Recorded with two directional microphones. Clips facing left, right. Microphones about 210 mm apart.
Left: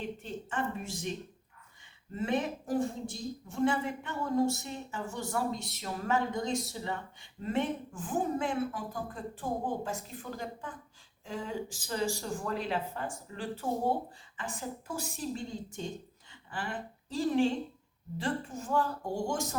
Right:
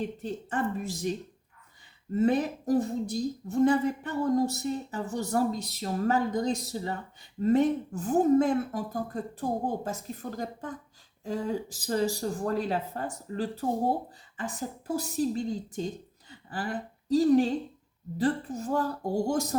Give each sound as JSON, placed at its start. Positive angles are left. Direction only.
{"t": 0.2, "sound": "a woman's voice", "side_deg": -40}
{"t": 2.1, "sound": "a woman's voice", "side_deg": -40}